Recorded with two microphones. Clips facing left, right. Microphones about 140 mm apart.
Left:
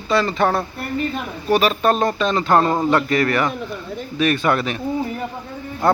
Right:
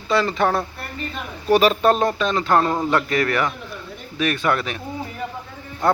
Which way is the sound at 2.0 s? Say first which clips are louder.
Left 2 dB; 5° right (ahead or behind).